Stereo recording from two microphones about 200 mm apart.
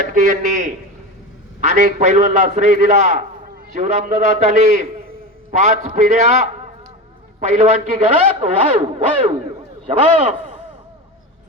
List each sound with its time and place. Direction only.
0.0 s a man's voice: 40° right (ahead or behind)